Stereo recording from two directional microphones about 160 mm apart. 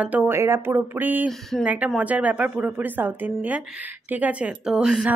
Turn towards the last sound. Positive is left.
turn(degrees=-5)  # may be behind; listen again after turning